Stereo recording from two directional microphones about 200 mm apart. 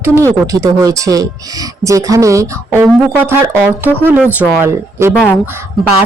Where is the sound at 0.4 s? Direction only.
15° right (ahead or behind).